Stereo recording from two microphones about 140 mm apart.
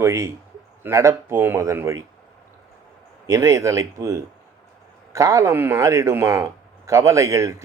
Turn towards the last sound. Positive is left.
turn(degrees=-20)  # may be behind; listen again after turning